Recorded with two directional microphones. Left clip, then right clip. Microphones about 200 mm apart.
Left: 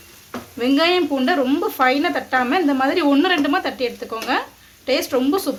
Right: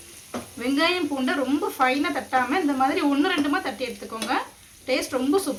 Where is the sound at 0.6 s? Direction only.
40° left (ahead or behind).